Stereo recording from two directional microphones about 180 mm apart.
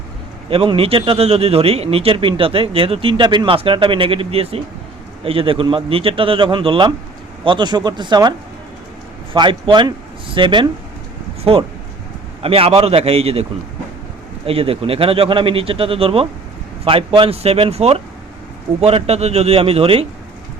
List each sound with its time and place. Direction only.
0.5 s a man's voice: 30° right (ahead or behind)
12.4 s speech: 30° right (ahead or behind)